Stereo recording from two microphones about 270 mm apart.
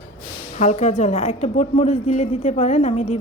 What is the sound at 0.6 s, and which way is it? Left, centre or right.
A woman's voice, left.